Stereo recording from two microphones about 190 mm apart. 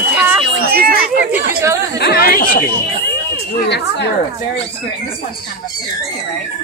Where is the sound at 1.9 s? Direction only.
55° left (ahead or behind).